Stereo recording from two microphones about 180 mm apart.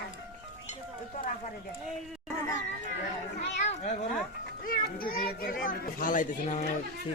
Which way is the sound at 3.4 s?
40° left (ahead or behind).